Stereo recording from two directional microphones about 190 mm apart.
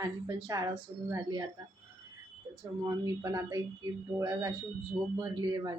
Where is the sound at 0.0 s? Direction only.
20° right (ahead or behind).